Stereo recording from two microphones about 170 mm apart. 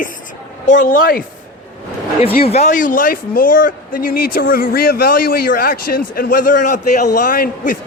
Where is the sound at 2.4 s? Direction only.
40° left (ahead or behind).